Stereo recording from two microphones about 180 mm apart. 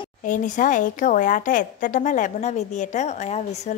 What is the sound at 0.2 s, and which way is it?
Speech, 45° left (ahead or behind).